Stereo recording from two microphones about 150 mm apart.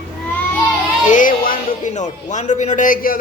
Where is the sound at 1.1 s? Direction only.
65° left (ahead or behind).